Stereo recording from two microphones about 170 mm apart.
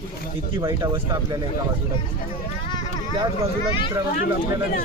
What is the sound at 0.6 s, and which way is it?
Speech, 30° right (ahead or behind).